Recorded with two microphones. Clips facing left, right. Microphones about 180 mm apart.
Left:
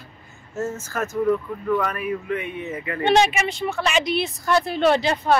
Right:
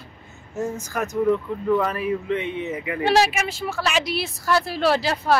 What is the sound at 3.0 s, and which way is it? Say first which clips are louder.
Speech: left 1 dB; centre (ahead or behind).